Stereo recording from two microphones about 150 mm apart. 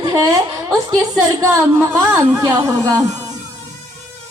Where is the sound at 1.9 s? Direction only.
15° right (ahead or behind).